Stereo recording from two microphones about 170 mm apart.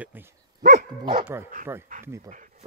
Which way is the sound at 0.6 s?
50° right (ahead or behind).